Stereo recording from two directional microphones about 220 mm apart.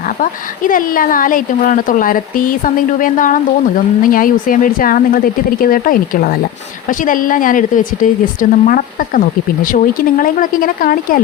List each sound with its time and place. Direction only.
0.2 s a woman's voice: 40° left (ahead or behind)